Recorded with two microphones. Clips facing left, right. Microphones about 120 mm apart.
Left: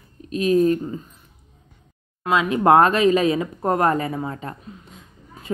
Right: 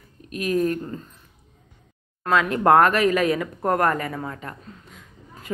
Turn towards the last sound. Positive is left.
turn(degrees=25)  # may be behind; listen again after turning